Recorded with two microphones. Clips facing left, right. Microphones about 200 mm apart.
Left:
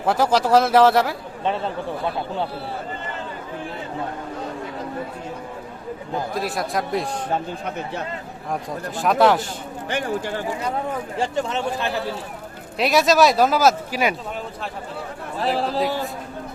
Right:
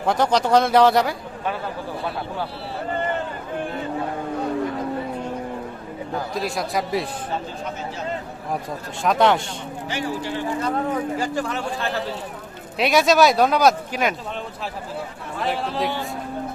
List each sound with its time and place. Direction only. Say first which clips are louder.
0.0 s speech: left 1 dB; 5° left (ahead or behind)
6.3 s speech: right 1 dB; centre (ahead or behind)
9.0 s speech: left 1 dB; centre (ahead or behind)
9.9 s speech: left 2 dB; 50° left (ahead or behind)
11.2 s speech: left 2 dB; 25° left (ahead or behind)
12.8 s speech: even; centre (ahead or behind)
15.5 s a man's voice: left 4 dB; 35° left (ahead or behind)